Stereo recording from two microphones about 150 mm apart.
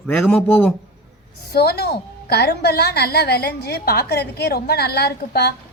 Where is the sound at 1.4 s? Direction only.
90° left.